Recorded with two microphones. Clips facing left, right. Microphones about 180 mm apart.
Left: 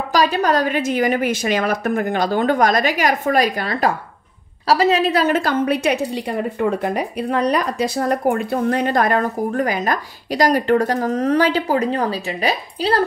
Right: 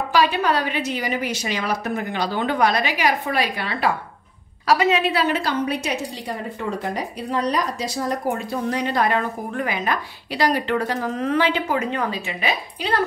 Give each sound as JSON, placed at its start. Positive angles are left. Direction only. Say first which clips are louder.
{"t": 0.1, "sound": "a woman's voice", "louder": "left 3 dB", "side_deg": 40}